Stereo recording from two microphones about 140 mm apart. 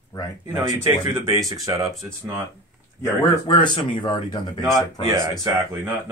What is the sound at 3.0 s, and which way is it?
Speech, 25° left (ahead or behind).